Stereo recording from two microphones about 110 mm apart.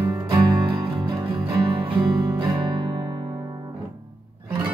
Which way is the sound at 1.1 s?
25° right (ahead or behind).